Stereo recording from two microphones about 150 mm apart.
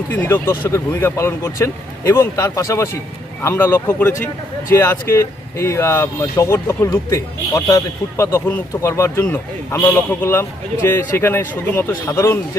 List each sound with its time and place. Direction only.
0.1 s speech: 15° left (ahead or behind)